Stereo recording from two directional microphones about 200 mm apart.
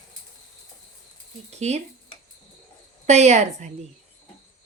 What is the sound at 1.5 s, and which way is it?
Speech, 35° right (ahead or behind).